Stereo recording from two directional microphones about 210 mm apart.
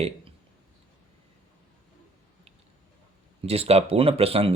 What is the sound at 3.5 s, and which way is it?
Speech, 30° right (ahead or behind).